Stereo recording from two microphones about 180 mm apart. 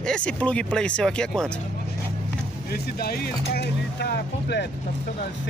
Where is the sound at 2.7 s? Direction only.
60° left (ahead or behind).